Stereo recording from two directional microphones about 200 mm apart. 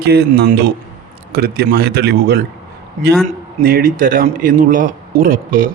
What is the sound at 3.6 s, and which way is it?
A man's voice, 45° right (ahead or behind).